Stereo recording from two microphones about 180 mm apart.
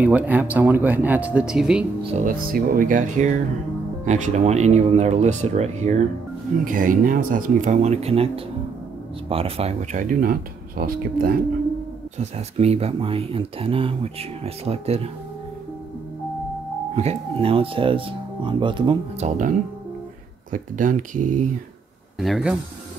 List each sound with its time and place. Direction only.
0.0 s speech: 10° right (ahead or behind)
2.0 s speech: 45° right (ahead or behind)
6.6 s speech: 50° right (ahead or behind)
9.3 s speech: 35° right (ahead or behind)
10.8 s speech: 55° right (ahead or behind)
12.2 s speech: 35° right (ahead or behind)
16.9 s speech: 35° right (ahead or behind)
19.1 s speech: 45° right (ahead or behind)
20.5 s speech: 45° right (ahead or behind)
22.2 s speech: 5° right (ahead or behind)